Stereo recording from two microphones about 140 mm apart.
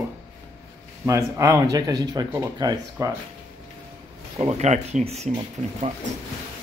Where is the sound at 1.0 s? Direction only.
20° right (ahead or behind).